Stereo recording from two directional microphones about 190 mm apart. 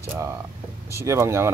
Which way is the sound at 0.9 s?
15° right (ahead or behind).